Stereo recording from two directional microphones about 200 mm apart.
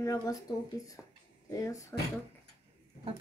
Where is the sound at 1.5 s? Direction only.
15° left (ahead or behind).